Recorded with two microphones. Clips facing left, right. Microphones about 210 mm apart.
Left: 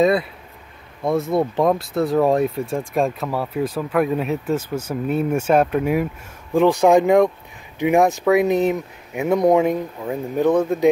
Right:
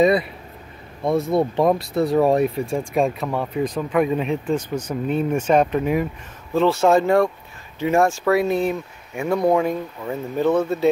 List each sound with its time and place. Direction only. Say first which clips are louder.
0.0 s speech: even; centre (ahead or behind); by 10.9 s 15° left (ahead or behind)